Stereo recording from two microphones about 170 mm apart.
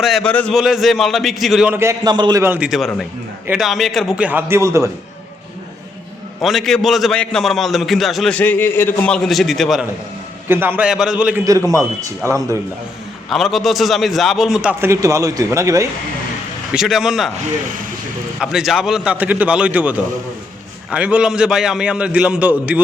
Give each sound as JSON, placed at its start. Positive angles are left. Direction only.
{"t": 0.0, "sound": "a man's voice", "side_deg": 0}
{"t": 2.4, "sound": "a man's voice", "side_deg": -10}
{"t": 6.4, "sound": "a man's voice", "side_deg": 0}
{"t": 10.5, "sound": "a man's voice", "side_deg": -10}
{"t": 12.2, "sound": "a man's voice", "side_deg": -15}
{"t": 13.3, "sound": "a man's voice", "side_deg": 0}
{"t": 16.7, "sound": "a man's voice", "side_deg": 0}
{"t": 18.3, "sound": "a man's voice", "side_deg": -5}